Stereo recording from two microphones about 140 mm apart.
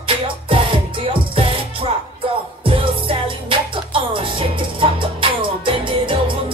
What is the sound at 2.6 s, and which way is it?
Music, 40° right (ahead or behind).